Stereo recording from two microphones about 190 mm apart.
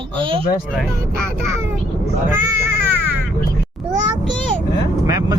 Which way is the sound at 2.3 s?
15° right (ahead or behind).